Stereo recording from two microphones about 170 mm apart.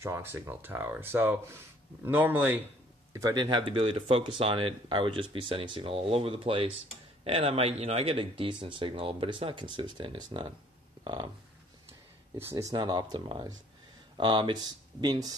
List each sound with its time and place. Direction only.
0.0 s speech: 15° right (ahead or behind)
12.4 s speech: 15° right (ahead or behind)
12.7 s speech: 25° right (ahead or behind)